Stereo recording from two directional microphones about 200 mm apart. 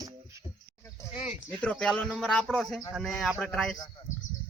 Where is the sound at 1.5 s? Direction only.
5° left (ahead or behind).